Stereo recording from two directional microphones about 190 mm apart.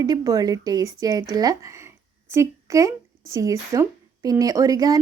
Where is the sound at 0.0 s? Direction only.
20° right (ahead or behind).